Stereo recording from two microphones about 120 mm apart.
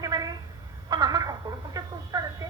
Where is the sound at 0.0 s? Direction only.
30° right (ahead or behind).